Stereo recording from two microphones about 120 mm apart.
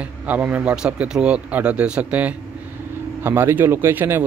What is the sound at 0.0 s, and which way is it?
Speech, 10° right (ahead or behind).